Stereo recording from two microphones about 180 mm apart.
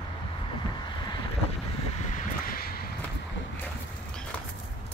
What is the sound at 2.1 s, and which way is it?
Vehicle, 50° left (ahead or behind).